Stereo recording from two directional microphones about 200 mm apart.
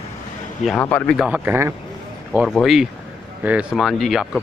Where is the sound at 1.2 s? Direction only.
10° right (ahead or behind).